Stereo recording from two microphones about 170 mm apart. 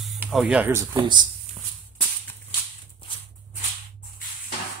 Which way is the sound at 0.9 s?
25° right (ahead or behind).